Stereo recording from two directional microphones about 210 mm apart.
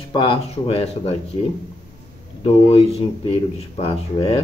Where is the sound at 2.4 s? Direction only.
30° left (ahead or behind).